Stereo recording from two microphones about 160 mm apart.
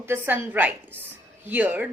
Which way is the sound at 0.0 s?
15° right (ahead or behind).